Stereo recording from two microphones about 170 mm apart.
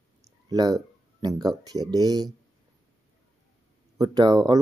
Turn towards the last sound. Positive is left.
turn(degrees=-25)  # may be behind; listen again after turning